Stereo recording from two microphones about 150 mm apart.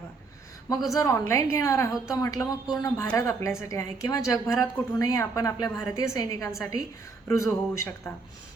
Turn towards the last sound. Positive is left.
turn(degrees=20)  # may be behind; listen again after turning